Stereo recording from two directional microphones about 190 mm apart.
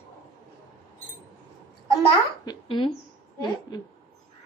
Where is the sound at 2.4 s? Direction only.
25° left (ahead or behind).